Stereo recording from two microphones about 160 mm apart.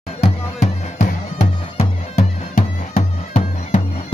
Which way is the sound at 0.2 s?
45° left (ahead or behind).